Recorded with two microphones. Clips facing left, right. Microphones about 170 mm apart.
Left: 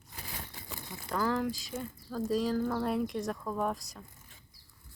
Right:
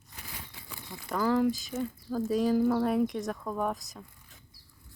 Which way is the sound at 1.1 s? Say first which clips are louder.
Right 5 dB; 5° right (ahead or behind).